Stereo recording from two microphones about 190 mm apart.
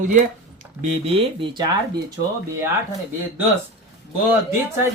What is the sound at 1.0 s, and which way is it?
Speech, 30° right (ahead or behind).